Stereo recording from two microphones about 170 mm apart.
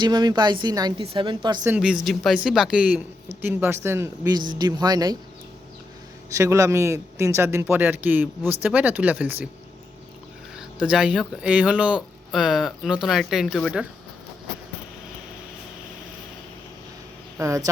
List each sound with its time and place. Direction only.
0.0 s speech: 25° right (ahead or behind)
1.6 s speech: 5° right (ahead or behind); by 5.1 s 25° right (ahead or behind)
6.3 s speech: 15° right (ahead or behind)
10.6 s speech: 5° right (ahead or behind)
17.3 s speech: 20° right (ahead or behind)